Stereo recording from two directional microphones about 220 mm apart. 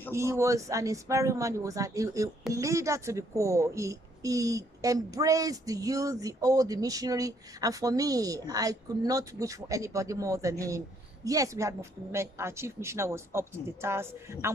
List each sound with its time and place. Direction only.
0.1 s a woman's voice: 15° right (ahead or behind)